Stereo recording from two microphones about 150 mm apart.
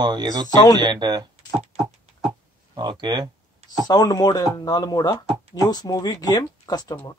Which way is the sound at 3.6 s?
25° left (ahead or behind).